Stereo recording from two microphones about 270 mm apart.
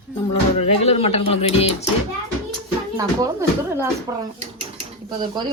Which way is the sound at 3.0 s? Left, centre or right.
Centre.